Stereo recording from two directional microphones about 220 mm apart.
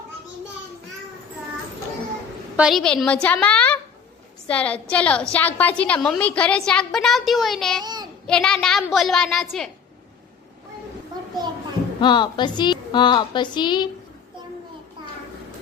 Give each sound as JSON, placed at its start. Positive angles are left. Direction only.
{"t": 2.6, "sound": "a woman's voice", "side_deg": 0}
{"t": 7.8, "sound": "a child's voice", "side_deg": -20}
{"t": 8.3, "sound": "a woman's voice", "side_deg": 5}
{"t": 11.9, "sound": "a woman's voice", "side_deg": 20}